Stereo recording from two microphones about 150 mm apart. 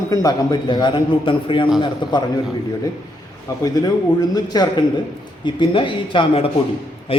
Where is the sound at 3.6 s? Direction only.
25° left (ahead or behind).